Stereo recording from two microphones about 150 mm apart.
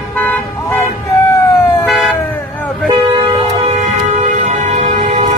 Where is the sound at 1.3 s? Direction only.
20° left (ahead or behind).